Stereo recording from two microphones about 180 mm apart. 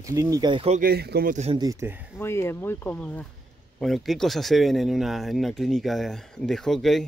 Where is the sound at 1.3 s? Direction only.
40° right (ahead or behind).